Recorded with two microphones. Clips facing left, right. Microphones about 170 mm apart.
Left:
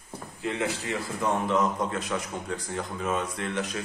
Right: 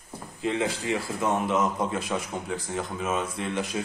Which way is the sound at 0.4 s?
20° right (ahead or behind).